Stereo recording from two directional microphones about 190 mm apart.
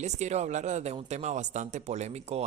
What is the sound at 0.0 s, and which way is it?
Speech, 35° right (ahead or behind).